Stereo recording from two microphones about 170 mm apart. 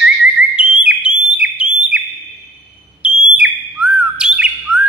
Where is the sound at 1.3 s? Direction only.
5° right (ahead or behind).